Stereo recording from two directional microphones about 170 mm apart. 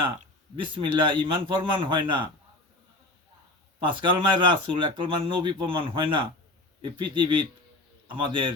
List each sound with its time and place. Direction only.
0.5 s speech: 30° right (ahead or behind)
3.8 s speech: 30° right (ahead or behind)